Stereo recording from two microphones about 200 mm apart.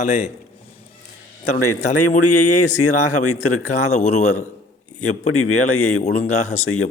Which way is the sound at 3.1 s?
90° left.